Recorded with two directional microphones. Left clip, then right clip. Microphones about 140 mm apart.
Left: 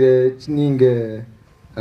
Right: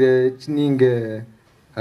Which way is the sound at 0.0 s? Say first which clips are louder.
Left 2 dB; 30° right (ahead or behind).